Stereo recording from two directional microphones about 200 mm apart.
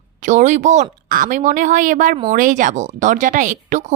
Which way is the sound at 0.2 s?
40° right (ahead or behind).